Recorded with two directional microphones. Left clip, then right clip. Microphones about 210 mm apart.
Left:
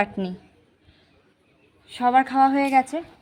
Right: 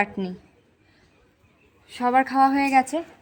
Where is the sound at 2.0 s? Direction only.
15° left (ahead or behind).